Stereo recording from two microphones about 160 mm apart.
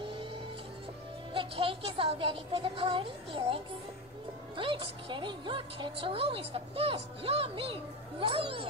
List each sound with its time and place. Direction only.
0.0 s music: 35° right (ahead or behind)
1.3 s speech: 35° right (ahead or behind)